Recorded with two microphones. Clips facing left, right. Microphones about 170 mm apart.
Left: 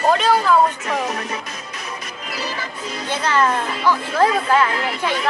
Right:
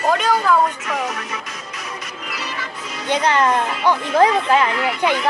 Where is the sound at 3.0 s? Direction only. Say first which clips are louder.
Right 2 dB; 15° right (ahead or behind).